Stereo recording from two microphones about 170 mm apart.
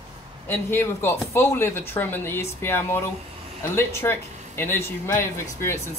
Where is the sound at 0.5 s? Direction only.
15° left (ahead or behind).